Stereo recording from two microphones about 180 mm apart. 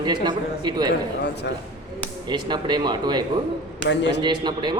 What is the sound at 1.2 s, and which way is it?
Speech, 70° left (ahead or behind).